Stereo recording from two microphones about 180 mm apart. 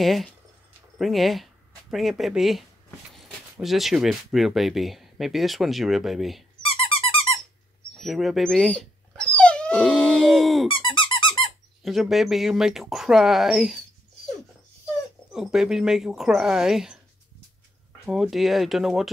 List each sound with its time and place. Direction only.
0.0 s speech: centre (ahead or behind)
6.6 s dog: 30° left (ahead or behind)
8.0 s dog: centre (ahead or behind)
10.7 s squeak: 25° left (ahead or behind)
11.8 s speech: centre (ahead or behind)
15.3 s speech: centre (ahead or behind)
18.0 s speech: 5° right (ahead or behind)